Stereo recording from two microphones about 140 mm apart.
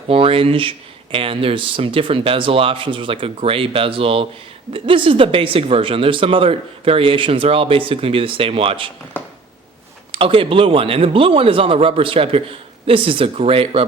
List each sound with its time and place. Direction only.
0.1 s speech: 40° right (ahead or behind)
10.1 s speech: 40° right (ahead or behind)